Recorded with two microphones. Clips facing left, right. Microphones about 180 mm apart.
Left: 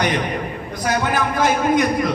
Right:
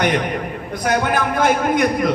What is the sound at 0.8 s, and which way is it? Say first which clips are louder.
A man's voice: right 2 dB; 55° right (ahead or behind).